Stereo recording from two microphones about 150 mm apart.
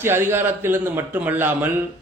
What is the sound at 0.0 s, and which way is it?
Speech, 15° right (ahead or behind).